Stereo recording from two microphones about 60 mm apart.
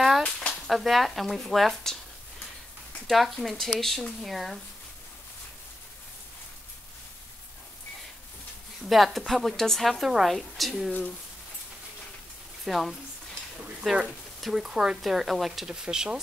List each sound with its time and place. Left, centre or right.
0.2 s a sound: centre
0.7 s a woman's voice: centre
3.1 s a woman's voice: centre
8.8 s a woman's voice: centre
12.6 s a woman's voice: centre